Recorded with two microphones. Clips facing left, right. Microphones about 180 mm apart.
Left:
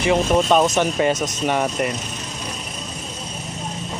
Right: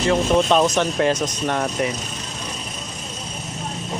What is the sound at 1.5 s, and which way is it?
Speech, 5° left (ahead or behind).